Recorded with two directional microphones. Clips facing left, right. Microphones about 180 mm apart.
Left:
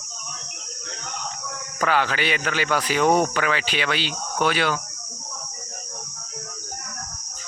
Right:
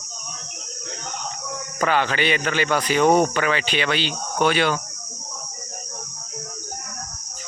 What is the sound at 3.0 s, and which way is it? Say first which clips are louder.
Speech: right 2 dB; 15° right (ahead or behind).